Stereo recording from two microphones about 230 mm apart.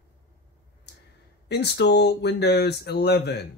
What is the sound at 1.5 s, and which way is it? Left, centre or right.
Speech, left.